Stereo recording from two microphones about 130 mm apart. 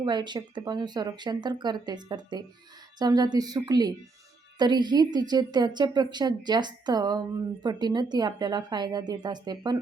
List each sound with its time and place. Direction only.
0.0 s a woman's voice: 35° right (ahead or behind)